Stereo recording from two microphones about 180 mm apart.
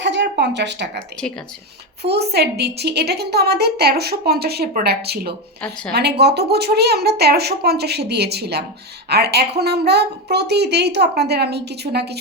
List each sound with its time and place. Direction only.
0.0 s speech: 75° right (ahead or behind)
2.0 s a woman's voice: 65° right (ahead or behind)